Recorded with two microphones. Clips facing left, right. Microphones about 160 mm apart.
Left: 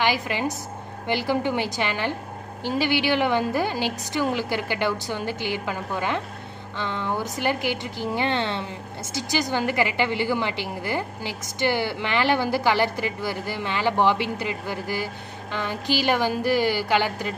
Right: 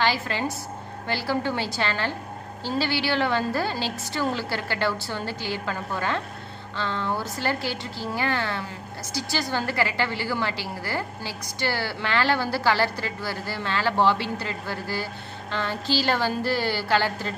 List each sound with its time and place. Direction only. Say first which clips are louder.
0.0 s a woman's voice: left 1 dB; 15° left (ahead or behind)